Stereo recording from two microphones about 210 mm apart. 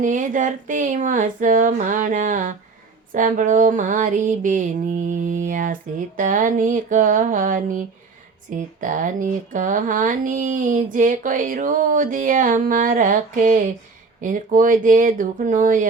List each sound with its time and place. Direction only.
0.0 s speech: 40° right (ahead or behind)